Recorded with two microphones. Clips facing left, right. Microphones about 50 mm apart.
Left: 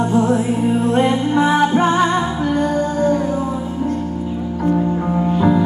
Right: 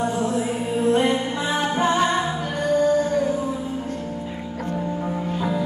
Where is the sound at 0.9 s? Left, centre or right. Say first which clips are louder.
Left 5 dB; left.